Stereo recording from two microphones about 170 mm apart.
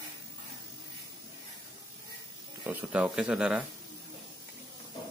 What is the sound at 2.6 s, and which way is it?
Speech, 10° right (ahead or behind).